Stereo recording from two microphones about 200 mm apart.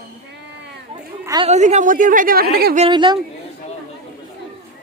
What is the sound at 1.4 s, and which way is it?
A woman's voice, 35° right (ahead or behind).